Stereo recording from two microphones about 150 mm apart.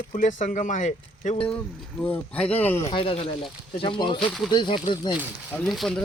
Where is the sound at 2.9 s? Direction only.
35° left (ahead or behind).